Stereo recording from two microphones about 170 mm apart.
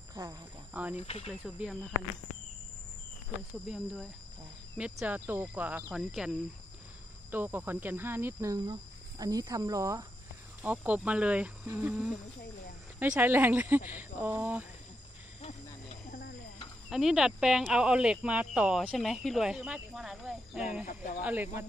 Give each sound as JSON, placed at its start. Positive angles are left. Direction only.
{"t": 0.1, "sound": "speech", "side_deg": -20}
{"t": 0.9, "sound": "speech", "side_deg": 35}
{"t": 1.4, "sound": "speech", "side_deg": 0}
{"t": 3.6, "sound": "speech", "side_deg": -5}
{"t": 16.9, "sound": "speech", "side_deg": 0}